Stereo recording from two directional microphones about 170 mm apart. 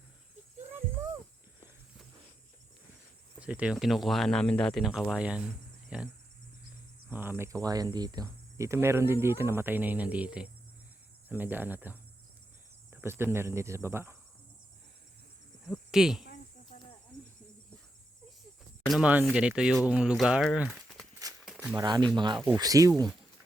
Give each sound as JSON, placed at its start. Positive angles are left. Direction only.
{"t": 3.3, "sound": "speech", "side_deg": -5}
{"t": 7.1, "sound": "speech", "side_deg": -10}
{"t": 15.6, "sound": "speech", "side_deg": 0}
{"t": 18.9, "sound": "speech", "side_deg": -5}
{"t": 21.4, "sound": "a sound", "side_deg": -5}
{"t": 21.8, "sound": "speech", "side_deg": -20}